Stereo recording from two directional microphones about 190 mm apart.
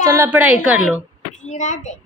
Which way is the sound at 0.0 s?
15° right (ahead or behind).